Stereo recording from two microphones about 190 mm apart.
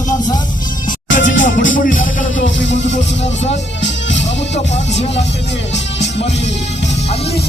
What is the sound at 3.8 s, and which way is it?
Music, 70° left (ahead or behind).